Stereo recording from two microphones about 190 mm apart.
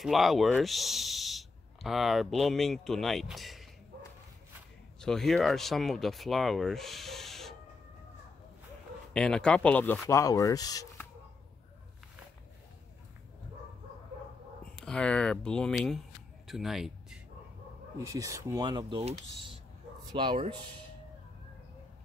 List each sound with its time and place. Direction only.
0.0 s speech: centre (ahead or behind)
5.0 s speech: centre (ahead or behind)
9.1 s speech: 5° left (ahead or behind)
14.6 s speech: 5° left (ahead or behind)
16.4 s a sound: centre (ahead or behind)
17.9 s speech: 15° right (ahead or behind)